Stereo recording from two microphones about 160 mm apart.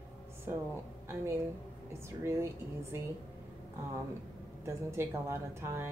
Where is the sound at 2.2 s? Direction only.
15° right (ahead or behind).